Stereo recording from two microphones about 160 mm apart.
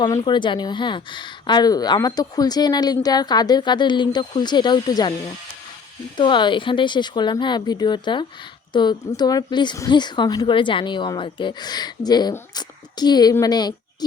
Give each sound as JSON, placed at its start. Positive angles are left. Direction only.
{"t": 0.0, "sound": "speech", "side_deg": 25}
{"t": 6.1, "sound": "speech", "side_deg": 30}